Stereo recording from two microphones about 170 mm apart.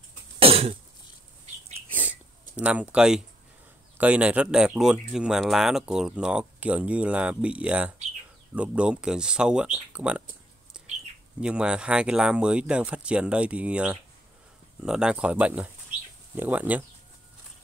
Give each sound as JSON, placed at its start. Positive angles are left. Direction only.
{"t": 0.4, "sound": "cough", "side_deg": -35}
{"t": 1.9, "sound": "a sound", "side_deg": -10}
{"t": 4.0, "sound": "speech", "side_deg": -10}
{"t": 11.4, "sound": "speech", "side_deg": -5}